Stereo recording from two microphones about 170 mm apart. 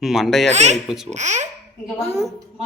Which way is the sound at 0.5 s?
40° right (ahead or behind).